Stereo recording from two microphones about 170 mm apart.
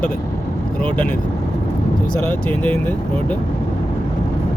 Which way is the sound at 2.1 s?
10° left (ahead or behind).